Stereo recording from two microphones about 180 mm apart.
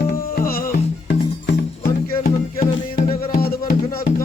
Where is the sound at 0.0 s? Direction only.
55° left (ahead or behind).